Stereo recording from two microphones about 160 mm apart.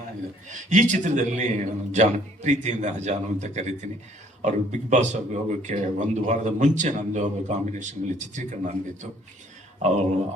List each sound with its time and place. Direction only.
0.4 s speech: 55° right (ahead or behind)